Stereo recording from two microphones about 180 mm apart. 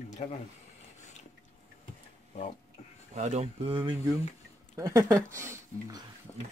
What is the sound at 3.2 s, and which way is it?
Speech, 40° right (ahead or behind).